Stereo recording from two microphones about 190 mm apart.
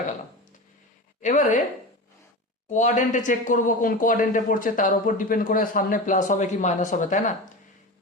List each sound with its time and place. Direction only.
1.2 s speech: 40° left (ahead or behind)
2.6 s speech: 40° left (ahead or behind)